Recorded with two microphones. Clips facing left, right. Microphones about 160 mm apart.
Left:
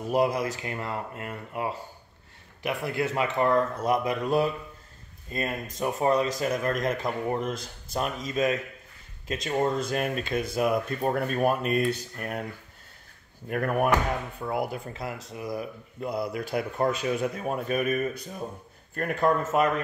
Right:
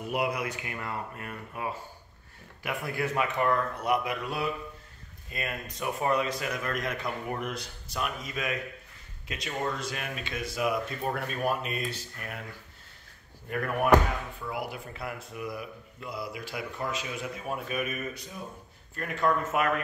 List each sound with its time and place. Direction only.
0.0 s speech: 40° left (ahead or behind)
6.9 s speech: 30° left (ahead or behind)
9.8 s speech: 45° left (ahead or behind)
14.4 s speech: 45° left (ahead or behind)